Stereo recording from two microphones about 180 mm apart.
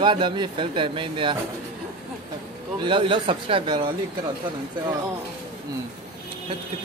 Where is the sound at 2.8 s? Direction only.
30° right (ahead or behind).